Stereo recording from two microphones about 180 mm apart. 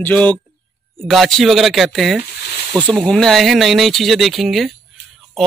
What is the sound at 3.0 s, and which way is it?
Speech, centre (ahead or behind).